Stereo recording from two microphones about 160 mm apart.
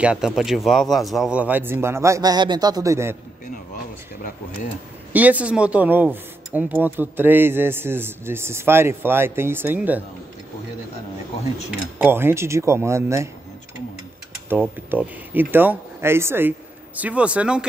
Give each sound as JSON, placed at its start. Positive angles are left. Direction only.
{"t": 0.0, "sound": "speech", "side_deg": -5}
{"t": 5.1, "sound": "speech", "side_deg": -10}
{"t": 12.0, "sound": "speech", "side_deg": -15}
{"t": 14.5, "sound": "speech", "side_deg": -15}